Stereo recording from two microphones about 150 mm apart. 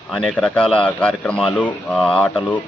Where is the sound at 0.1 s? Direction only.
5° left (ahead or behind).